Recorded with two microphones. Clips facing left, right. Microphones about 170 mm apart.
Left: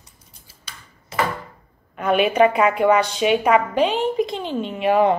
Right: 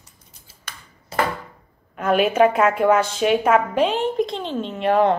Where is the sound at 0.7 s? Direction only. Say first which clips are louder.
Right 3 dB; 50° right (ahead or behind).